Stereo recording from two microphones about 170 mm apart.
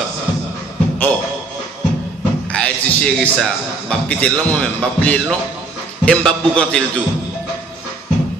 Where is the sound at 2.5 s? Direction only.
5° left (ahead or behind).